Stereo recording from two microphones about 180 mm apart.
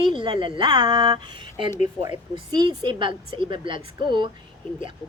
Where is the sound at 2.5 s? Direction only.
25° right (ahead or behind).